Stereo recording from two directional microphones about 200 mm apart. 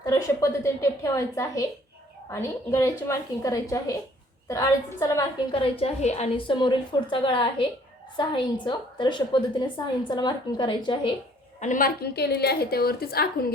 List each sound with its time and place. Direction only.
0.0 s a woman's voice: 20° left (ahead or behind)
11.6 s a woman's voice: 40° left (ahead or behind)